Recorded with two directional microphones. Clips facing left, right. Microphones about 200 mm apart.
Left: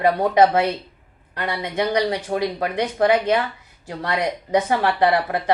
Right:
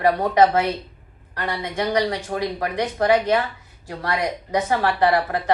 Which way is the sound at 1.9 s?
20° left (ahead or behind).